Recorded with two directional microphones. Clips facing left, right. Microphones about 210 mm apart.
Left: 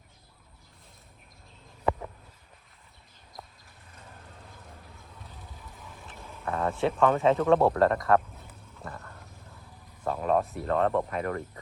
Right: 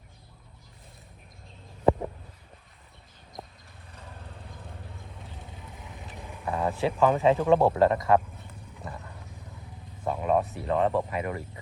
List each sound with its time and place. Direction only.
1.8 s a sound: 30° right (ahead or behind)
5.8 s boat: 20° right (ahead or behind)
6.5 s speech: centre (ahead or behind)
8.5 s vehicle: 15° right (ahead or behind)
10.1 s speech: 5° right (ahead or behind)